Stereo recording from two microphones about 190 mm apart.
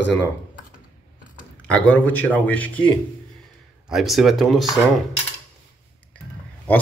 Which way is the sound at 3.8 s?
Centre (ahead or behind).